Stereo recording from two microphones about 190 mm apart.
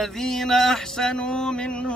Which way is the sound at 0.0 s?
Centre (ahead or behind).